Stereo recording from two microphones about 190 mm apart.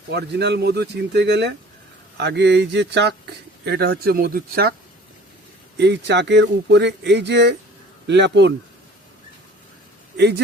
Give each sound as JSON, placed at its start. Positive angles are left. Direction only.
{"t": 0.1, "sound": "speech", "side_deg": -60}
{"t": 5.7, "sound": "speech", "side_deg": -65}
{"t": 10.2, "sound": "speech", "side_deg": -60}